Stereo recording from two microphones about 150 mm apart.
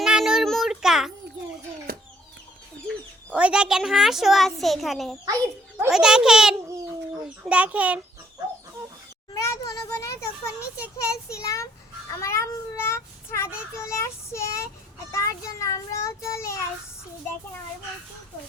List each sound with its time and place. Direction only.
0.0 s child singing: 5° right (ahead or behind)
1.9 s chicken: 75° right (ahead or behind)
3.3 s a child's voice: 5° right (ahead or behind)
9.3 s children playing: 25° left (ahead or behind)
11.0 s a child's voice: 20° left (ahead or behind)
12.1 s child singing: 20° left (ahead or behind)
15.1 s a child's voice: 20° left (ahead or behind)